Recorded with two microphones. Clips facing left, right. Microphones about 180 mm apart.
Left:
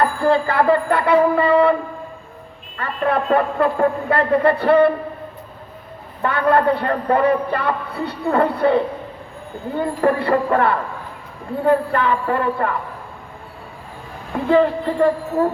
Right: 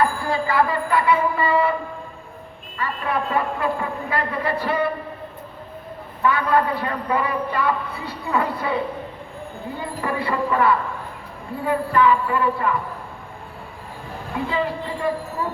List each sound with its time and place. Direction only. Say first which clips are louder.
0.3 s a man's voice: left 6 dB; 60° left (ahead or behind)
2.7 s a man's voice: left 5 dB; 55° left (ahead or behind)
6.2 s a man's voice: left 3 dB; 55° left (ahead or behind)
14.5 s speech: left 12 dB; 50° left (ahead or behind)